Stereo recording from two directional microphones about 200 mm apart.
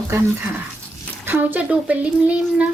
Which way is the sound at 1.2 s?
10° right (ahead or behind).